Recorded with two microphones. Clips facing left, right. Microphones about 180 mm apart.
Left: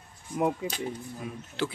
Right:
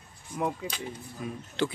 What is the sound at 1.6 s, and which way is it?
Speech, 5° left (ahead or behind).